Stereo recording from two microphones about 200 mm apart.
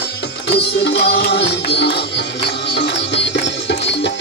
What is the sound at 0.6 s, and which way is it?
Music, 55° left (ahead or behind).